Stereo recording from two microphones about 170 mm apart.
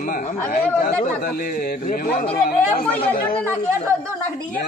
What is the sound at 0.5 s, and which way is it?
Speech, 55° left (ahead or behind).